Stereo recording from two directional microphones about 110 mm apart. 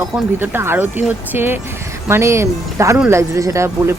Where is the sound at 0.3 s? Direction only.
20° right (ahead or behind).